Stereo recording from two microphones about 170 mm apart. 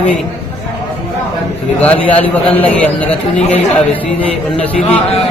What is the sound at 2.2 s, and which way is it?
Speech, 10° left (ahead or behind).